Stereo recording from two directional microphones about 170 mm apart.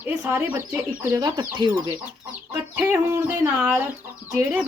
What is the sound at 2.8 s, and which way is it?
Speech, 10° right (ahead or behind).